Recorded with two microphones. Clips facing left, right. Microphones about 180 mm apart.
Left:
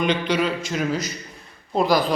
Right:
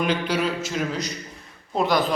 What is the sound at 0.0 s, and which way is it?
A man's voice, 5° right (ahead or behind).